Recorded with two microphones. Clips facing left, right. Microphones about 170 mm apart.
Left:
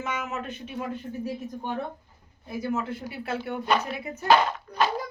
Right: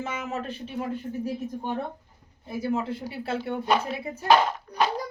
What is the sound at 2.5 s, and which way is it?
Speech, 30° right (ahead or behind).